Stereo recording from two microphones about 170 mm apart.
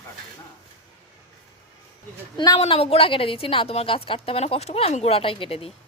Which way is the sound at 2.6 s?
35° left (ahead or behind).